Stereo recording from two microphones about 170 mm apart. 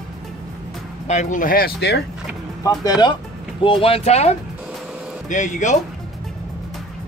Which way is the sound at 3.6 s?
35° left (ahead or behind).